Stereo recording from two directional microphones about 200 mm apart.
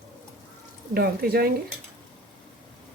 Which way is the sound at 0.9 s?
50° right (ahead or behind).